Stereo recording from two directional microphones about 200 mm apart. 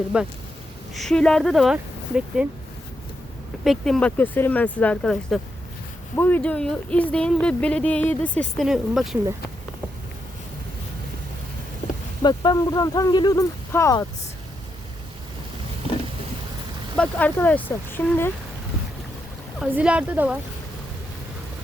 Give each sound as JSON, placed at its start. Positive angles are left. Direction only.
{"t": 0.1, "sound": "speech", "side_deg": -5}
{"t": 3.6, "sound": "speech", "side_deg": 0}
{"t": 12.2, "sound": "speech", "side_deg": 20}
{"t": 17.0, "sound": "speech", "side_deg": 10}
{"t": 19.5, "sound": "speech", "side_deg": -5}